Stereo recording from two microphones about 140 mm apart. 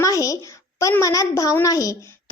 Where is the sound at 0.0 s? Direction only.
25° left (ahead or behind).